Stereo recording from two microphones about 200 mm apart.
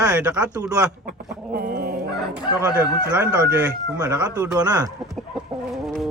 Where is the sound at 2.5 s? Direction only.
10° right (ahead or behind).